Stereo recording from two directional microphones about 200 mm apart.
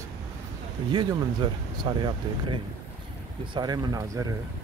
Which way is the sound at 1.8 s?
25° right (ahead or behind).